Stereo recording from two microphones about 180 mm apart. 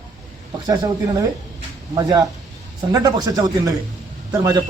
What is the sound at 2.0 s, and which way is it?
Speech, 20° right (ahead or behind).